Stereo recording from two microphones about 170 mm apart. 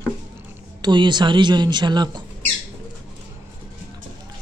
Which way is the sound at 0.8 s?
25° right (ahead or behind).